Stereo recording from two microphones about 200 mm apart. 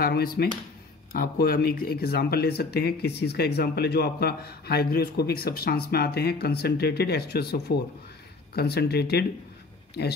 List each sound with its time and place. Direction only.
0.0 s speech: 50° left (ahead or behind)